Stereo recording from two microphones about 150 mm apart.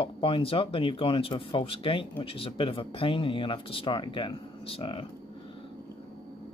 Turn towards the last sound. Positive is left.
turn(degrees=35)  # may be behind; listen again after turning